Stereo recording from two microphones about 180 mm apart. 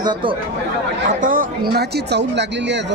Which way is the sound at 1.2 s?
50° right (ahead or behind).